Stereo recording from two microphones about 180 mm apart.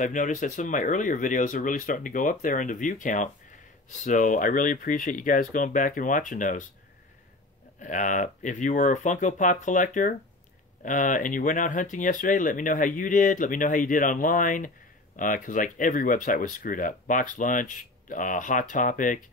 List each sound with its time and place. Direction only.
0.0 s speech: 45° left (ahead or behind)
7.8 s speech: 45° left (ahead or behind)